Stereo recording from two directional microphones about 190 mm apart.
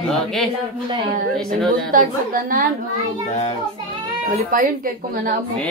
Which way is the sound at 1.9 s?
45° right (ahead or behind).